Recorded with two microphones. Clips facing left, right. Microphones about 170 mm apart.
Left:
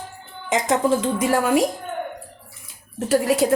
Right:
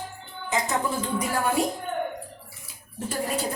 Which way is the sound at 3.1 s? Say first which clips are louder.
Left 10 dB; 90° left.